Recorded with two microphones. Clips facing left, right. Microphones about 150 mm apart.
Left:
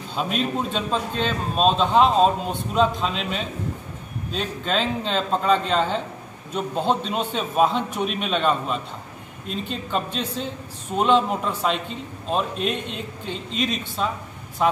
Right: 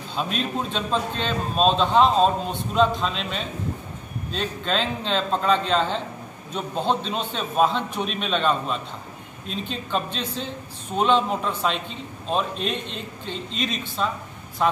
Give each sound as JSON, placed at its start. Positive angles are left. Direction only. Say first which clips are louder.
{"t": 0.1, "sound": "a man's voice", "louder": "left 2 dB", "side_deg": 0}